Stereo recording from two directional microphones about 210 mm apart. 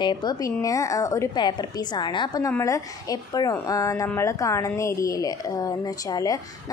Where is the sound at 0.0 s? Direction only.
20° left (ahead or behind).